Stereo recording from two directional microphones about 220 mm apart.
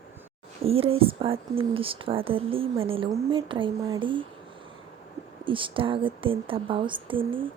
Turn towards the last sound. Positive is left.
turn(degrees=-25)  # may be behind; listen again after turning